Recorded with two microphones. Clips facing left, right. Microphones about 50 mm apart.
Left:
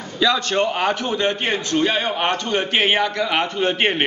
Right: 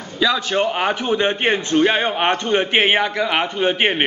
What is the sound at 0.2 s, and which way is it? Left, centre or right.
A man's voice, centre.